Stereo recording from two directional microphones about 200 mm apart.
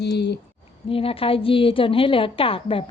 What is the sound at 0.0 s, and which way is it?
Speech, 55° left (ahead or behind).